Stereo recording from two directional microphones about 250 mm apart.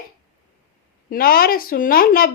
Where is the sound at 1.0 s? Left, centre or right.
Left.